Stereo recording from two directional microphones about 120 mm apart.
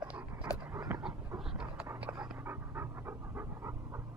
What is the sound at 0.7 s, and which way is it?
Dog, 30° right (ahead or behind).